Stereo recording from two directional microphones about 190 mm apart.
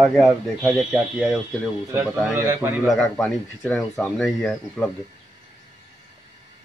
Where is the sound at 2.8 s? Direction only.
Centre (ahead or behind).